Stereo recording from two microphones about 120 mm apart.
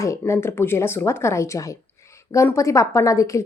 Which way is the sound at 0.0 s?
25° left (ahead or behind).